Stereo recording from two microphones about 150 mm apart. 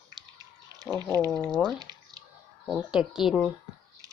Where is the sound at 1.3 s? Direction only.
5° left (ahead or behind).